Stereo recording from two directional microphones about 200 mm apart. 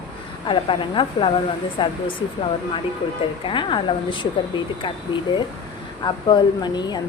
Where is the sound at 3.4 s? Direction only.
25° left (ahead or behind).